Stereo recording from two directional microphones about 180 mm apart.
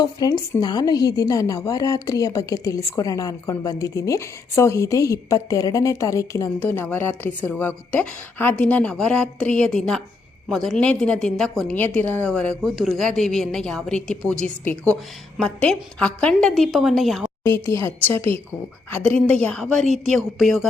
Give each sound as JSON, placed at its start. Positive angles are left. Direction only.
{"t": 0.0, "sound": "speech", "side_deg": 25}
{"t": 17.4, "sound": "speech", "side_deg": 15}
{"t": 19.8, "sound": "a woman's voice", "side_deg": -40}
{"t": 20.1, "sound": "speech", "side_deg": 0}